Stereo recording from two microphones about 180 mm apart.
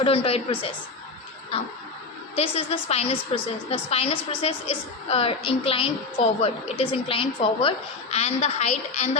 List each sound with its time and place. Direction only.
0.0 s a woman's voice: 30° left (ahead or behind)
2.3 s a woman's voice: 30° left (ahead or behind)